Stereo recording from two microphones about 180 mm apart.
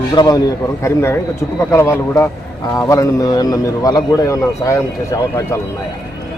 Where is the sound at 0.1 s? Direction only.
20° left (ahead or behind).